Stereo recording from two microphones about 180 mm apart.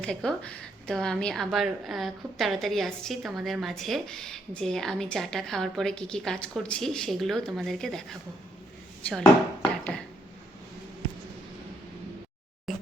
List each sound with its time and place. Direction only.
0.0 s a woman's voice: 5° left (ahead or behind)
9.0 s speech: 5° left (ahead or behind)
12.7 s a sound: centre (ahead or behind)